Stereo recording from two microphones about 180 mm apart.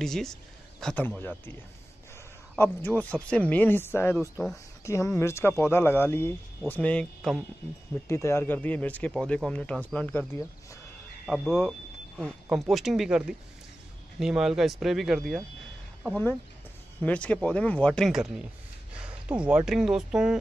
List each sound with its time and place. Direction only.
0.0 s speech: centre (ahead or behind)
2.6 s speech: 10° left (ahead or behind)
8.1 s speech: 15° left (ahead or behind)
17.0 s speech: 5° left (ahead or behind)